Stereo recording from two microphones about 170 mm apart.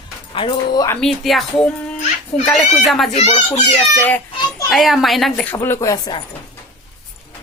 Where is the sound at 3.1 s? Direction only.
40° left (ahead or behind).